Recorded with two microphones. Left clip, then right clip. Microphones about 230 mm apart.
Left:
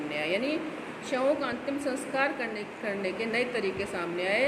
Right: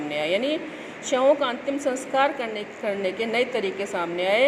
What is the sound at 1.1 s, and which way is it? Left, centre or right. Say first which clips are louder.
A woman's voice: right 8 dB; centre.